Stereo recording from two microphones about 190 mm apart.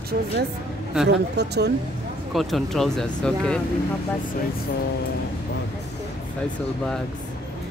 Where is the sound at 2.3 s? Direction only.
Centre (ahead or behind).